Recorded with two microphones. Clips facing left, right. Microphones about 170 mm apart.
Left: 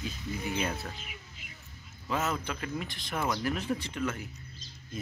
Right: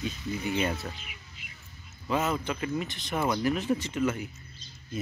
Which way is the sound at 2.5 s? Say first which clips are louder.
Right 5 dB; 10° right (ahead or behind).